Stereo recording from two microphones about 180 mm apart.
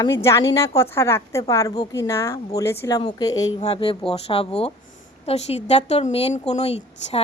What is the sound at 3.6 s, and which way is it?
Speech, 30° left (ahead or behind).